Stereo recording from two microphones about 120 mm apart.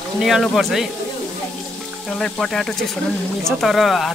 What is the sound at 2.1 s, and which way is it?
Speech, 5° left (ahead or behind).